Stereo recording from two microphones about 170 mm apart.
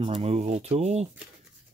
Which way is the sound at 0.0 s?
35° right (ahead or behind).